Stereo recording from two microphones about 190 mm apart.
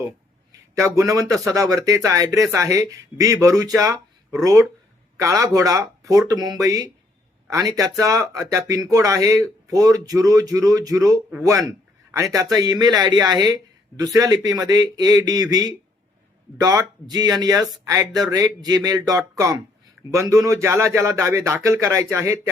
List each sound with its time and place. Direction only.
0.8 s a man's voice: 15° right (ahead or behind)